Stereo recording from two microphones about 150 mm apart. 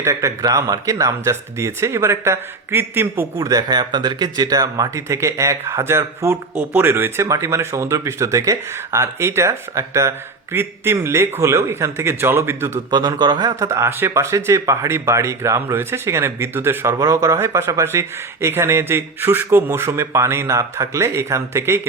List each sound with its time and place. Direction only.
0.0 s speech: 20° right (ahead or behind)
12.9 s speech: 30° right (ahead or behind)